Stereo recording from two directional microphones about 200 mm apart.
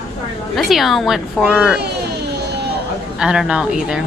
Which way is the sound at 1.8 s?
55° right (ahead or behind).